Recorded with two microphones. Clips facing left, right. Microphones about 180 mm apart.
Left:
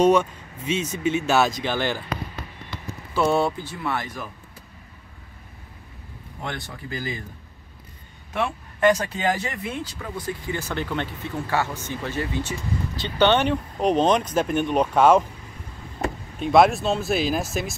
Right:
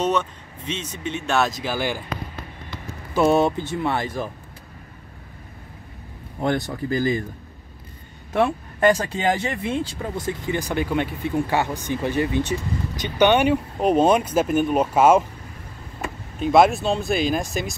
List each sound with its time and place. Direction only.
0.0 s speech: 10° left (ahead or behind); by 2.0 s 10° right (ahead or behind)
3.2 s speech: 15° right (ahead or behind)
6.4 s speech: 40° right (ahead or behind)
8.3 s speech: 40° right (ahead or behind); by 15.2 s 5° right (ahead or behind)
16.3 s speech: centre (ahead or behind)